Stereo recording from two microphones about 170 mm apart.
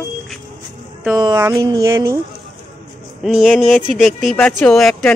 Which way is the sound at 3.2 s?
Centre (ahead or behind).